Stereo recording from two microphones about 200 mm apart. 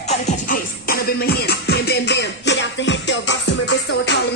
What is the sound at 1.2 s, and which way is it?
Music, 55° left (ahead or behind).